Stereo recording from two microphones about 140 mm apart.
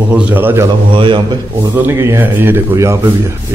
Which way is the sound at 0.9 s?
35° right (ahead or behind).